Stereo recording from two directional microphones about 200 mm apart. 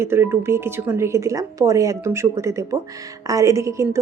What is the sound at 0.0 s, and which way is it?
A woman's voice, 10° right (ahead or behind).